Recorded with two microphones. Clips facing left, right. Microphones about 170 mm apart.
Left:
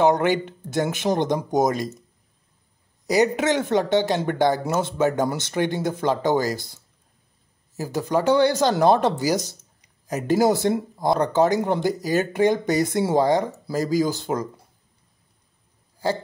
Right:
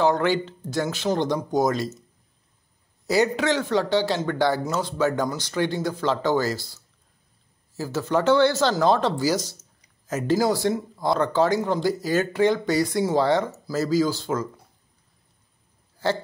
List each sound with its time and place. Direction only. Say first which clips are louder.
0.0 s speech: left 2 dB; 20° left (ahead or behind)
3.1 s speech: left 2 dB; 20° left (ahead or behind)